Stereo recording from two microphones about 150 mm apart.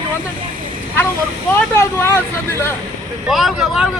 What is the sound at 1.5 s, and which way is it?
Speech, 15° left (ahead or behind).